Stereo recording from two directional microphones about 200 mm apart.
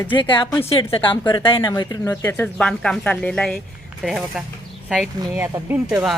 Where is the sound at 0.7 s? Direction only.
25° left (ahead or behind).